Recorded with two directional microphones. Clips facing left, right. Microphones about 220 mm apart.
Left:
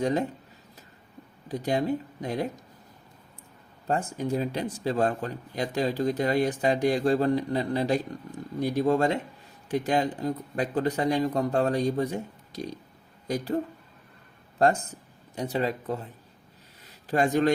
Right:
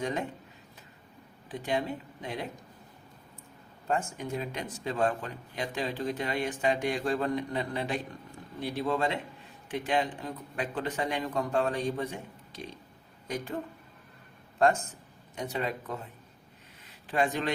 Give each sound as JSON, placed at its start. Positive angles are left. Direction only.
{"t": 0.0, "sound": "speech", "side_deg": 35}
{"t": 1.5, "sound": "speech", "side_deg": 40}
{"t": 3.8, "sound": "speech", "side_deg": 35}
{"t": 15.4, "sound": "speech", "side_deg": 35}
{"t": 16.8, "sound": "a sound", "side_deg": 40}